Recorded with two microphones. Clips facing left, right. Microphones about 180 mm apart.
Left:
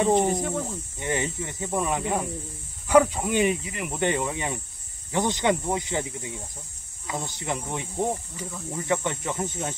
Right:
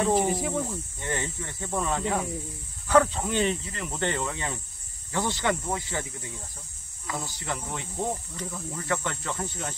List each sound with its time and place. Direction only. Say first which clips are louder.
0.0 s speech: left 3 dB; 5° right (ahead or behind)
0.7 s speech: left 3 dB; 15° left (ahead or behind)